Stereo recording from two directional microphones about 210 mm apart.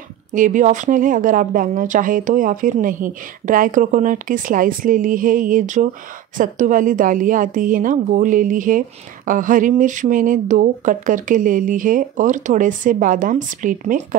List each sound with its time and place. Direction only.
0.3 s a woman's voice: 40° right (ahead or behind)